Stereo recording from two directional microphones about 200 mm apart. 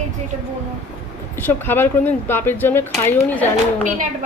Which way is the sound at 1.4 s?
10° left (ahead or behind).